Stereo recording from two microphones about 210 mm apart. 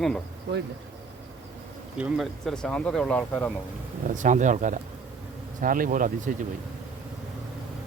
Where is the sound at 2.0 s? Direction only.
5° right (ahead or behind).